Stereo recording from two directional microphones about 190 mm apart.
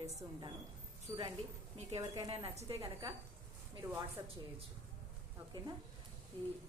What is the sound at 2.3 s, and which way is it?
Speech, 30° right (ahead or behind).